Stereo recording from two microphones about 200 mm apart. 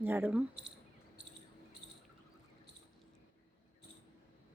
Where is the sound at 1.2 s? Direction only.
60° right (ahead or behind).